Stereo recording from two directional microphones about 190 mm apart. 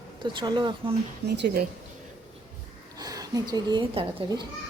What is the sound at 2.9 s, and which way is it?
Speech, 20° right (ahead or behind).